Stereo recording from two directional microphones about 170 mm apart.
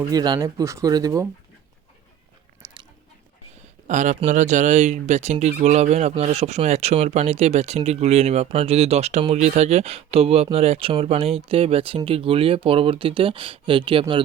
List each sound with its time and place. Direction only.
0.0 s speech: 25° right (ahead or behind)
3.8 s speech: 45° right (ahead or behind); by 14.0 s 30° right (ahead or behind)